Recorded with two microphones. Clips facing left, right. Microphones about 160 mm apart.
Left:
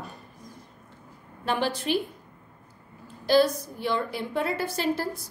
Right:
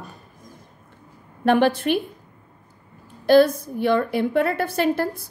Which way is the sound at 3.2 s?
55° right (ahead or behind).